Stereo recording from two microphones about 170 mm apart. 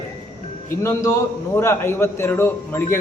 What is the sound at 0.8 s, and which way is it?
A man's voice, 15° left (ahead or behind).